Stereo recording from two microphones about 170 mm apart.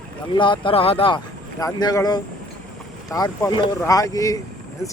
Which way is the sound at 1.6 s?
20° left (ahead or behind).